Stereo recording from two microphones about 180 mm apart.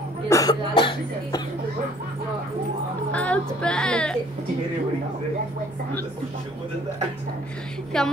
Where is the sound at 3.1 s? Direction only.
5° left (ahead or behind).